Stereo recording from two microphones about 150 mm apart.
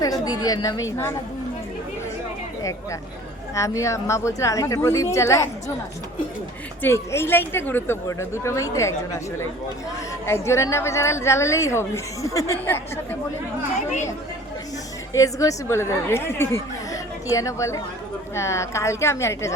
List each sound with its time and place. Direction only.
0.0 s a woman's voice: 25° left (ahead or behind)
3.5 s a woman's voice: 20° left (ahead or behind)
6.8 s a woman's voice: 15° left (ahead or behind)
15.1 s a woman's voice: 20° left (ahead or behind)